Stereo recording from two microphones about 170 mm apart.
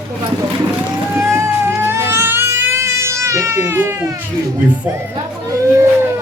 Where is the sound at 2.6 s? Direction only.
15° right (ahead or behind).